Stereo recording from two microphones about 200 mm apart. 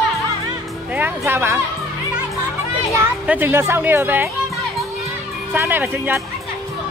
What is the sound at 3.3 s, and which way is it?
Speech, 10° right (ahead or behind).